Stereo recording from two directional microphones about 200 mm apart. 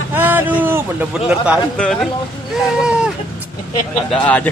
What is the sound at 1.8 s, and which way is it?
Speech, centre (ahead or behind).